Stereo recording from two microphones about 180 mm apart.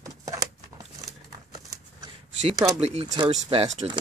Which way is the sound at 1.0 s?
20° right (ahead or behind).